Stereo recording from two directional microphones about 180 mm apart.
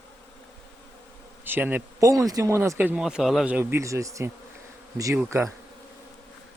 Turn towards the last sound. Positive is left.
turn(degrees=-15)  # may be behind; listen again after turning